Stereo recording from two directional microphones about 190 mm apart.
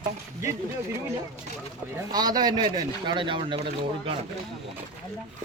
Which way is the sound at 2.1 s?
20° right (ahead or behind).